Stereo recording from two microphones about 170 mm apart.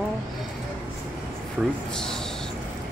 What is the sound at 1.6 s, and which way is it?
Speech, 5° right (ahead or behind).